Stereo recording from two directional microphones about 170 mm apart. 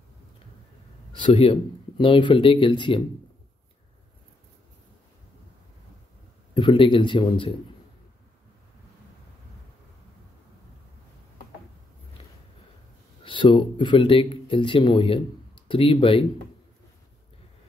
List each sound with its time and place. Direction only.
1.1 s speech: 30° left (ahead or behind)
6.5 s speech: 30° left (ahead or behind)
12.2 s a sound: 35° left (ahead or behind)
13.2 s speech: 30° left (ahead or behind)